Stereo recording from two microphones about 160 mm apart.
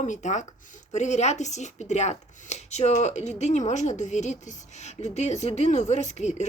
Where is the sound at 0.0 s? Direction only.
50° left (ahead or behind).